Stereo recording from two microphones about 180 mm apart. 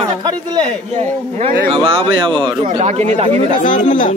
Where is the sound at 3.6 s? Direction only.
45° left (ahead or behind).